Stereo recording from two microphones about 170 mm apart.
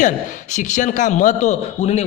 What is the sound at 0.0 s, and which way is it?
A man's voice, 45° left (ahead or behind).